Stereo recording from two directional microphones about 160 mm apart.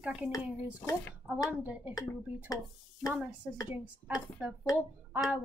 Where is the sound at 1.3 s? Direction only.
10° right (ahead or behind).